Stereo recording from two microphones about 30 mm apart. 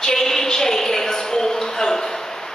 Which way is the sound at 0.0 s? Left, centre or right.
Centre.